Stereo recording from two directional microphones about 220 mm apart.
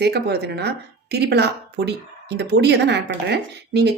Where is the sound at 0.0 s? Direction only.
45° right (ahead or behind).